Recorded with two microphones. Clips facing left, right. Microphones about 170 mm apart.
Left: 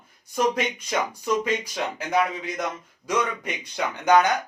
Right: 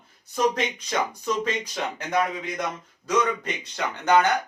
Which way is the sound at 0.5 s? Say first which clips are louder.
Left 1 dB; 10° left (ahead or behind).